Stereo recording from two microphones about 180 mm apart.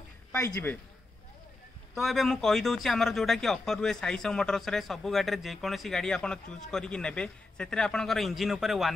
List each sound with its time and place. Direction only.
0.3 s speech: 15° left (ahead or behind)
2.0 s speech: centre (ahead or behind)